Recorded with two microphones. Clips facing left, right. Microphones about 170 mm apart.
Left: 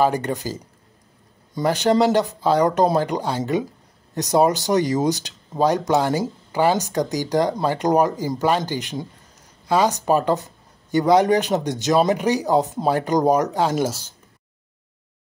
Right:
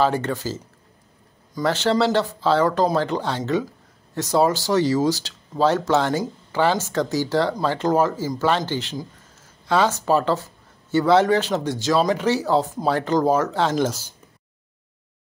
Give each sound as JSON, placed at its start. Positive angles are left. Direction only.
{"t": 0.0, "sound": "speech", "side_deg": 15}